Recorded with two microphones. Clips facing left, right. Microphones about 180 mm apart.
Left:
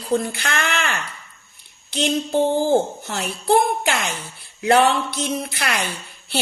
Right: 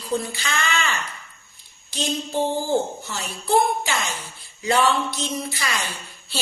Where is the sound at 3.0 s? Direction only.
60° left (ahead or behind).